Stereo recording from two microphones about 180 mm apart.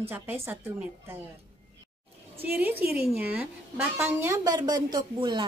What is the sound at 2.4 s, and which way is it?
A woman's voice, 10° right (ahead or behind).